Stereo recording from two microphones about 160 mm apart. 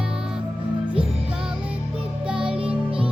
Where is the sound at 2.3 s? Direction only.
35° right (ahead or behind).